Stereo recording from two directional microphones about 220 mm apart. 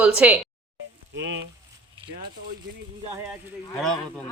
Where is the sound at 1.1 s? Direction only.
55° right (ahead or behind).